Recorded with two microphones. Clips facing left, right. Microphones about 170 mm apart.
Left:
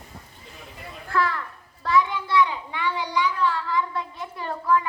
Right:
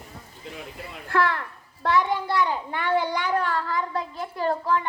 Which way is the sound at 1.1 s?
65° right (ahead or behind).